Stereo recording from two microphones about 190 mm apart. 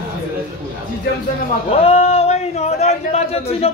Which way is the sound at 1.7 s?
35° left (ahead or behind).